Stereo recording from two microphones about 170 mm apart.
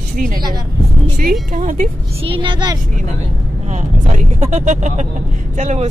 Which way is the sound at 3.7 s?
45° right (ahead or behind).